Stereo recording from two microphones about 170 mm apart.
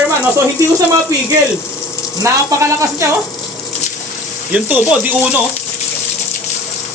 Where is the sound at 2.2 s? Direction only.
15° right (ahead or behind).